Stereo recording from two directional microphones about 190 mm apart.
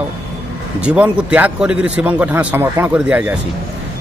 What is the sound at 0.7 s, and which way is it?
A man's voice, 5° right (ahead or behind).